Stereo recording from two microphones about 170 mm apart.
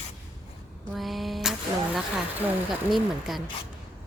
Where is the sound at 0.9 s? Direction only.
Centre (ahead or behind).